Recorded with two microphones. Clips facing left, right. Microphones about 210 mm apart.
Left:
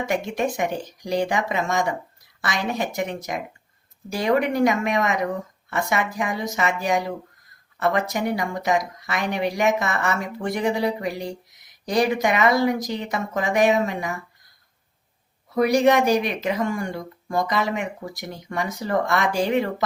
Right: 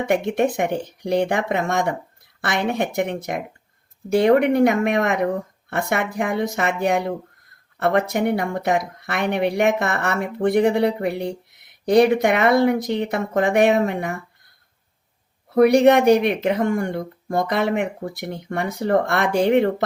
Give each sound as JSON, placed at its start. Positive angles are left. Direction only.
{"t": 0.0, "sound": "speech", "side_deg": -60}